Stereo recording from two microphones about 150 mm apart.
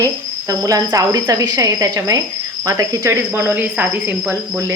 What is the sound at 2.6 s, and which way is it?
Speech, 20° right (ahead or behind).